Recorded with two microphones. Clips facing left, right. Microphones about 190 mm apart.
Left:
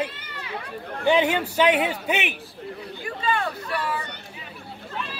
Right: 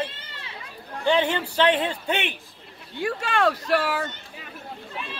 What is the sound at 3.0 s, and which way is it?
Speech, 80° right.